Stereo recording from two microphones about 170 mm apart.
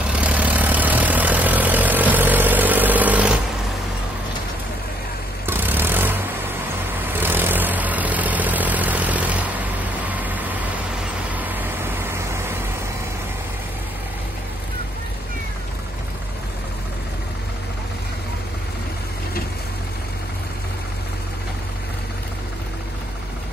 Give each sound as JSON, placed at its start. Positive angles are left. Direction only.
{"t": 0.0, "sound": "vehicle", "side_deg": -10}
{"t": 5.5, "sound": "vehicle", "side_deg": -10}